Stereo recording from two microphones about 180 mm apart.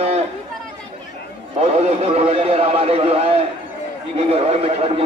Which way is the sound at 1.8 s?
35° right (ahead or behind).